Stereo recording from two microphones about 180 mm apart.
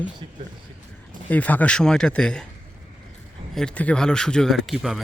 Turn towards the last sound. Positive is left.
turn(degrees=0)  # may be behind; listen again after turning